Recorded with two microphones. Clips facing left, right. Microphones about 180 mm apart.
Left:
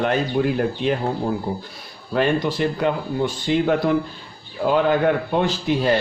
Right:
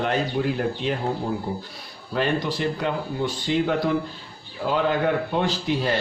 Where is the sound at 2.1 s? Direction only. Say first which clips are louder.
Left 4 dB; 55° left (ahead or behind).